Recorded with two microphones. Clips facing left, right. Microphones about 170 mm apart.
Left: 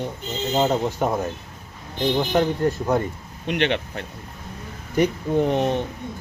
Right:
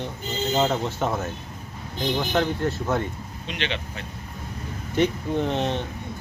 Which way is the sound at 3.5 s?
55° left (ahead or behind).